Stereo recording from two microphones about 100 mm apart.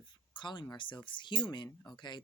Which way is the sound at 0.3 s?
50° left (ahead or behind).